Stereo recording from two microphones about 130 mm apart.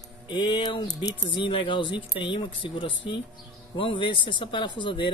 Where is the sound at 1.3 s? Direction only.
40° left (ahead or behind).